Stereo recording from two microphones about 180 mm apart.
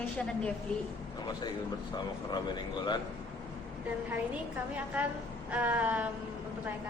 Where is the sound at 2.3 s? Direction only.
25° left (ahead or behind).